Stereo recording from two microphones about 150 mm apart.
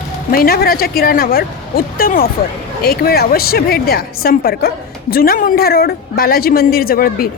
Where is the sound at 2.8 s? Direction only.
90° left.